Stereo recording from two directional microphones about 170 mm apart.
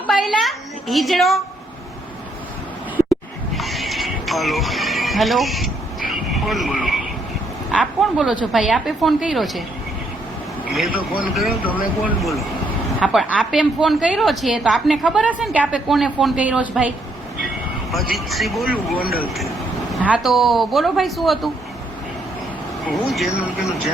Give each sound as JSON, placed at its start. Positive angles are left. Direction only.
{"t": 0.1, "sound": "a woman's voice", "side_deg": 0}
{"t": 3.5, "sound": "music", "side_deg": 0}
{"t": 6.1, "sound": "frog", "side_deg": 0}
{"t": 7.8, "sound": "a woman's voice", "side_deg": -5}
{"t": 11.2, "sound": "a woman's voice", "side_deg": -5}
{"t": 18.1, "sound": "a woman's voice", "side_deg": 0}
{"t": 18.9, "sound": "speech", "side_deg": 60}
{"t": 19.9, "sound": "a woman's voice", "side_deg": -5}
{"t": 22.9, "sound": "a woman's voice", "side_deg": 0}